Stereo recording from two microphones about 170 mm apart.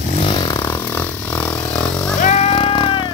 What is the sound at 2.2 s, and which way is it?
Music, 40° left (ahead or behind).